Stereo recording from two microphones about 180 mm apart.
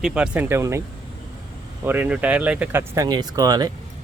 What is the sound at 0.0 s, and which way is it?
Speech, 5° right (ahead or behind).